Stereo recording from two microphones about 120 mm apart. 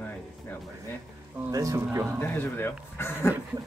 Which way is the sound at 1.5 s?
25° right (ahead or behind).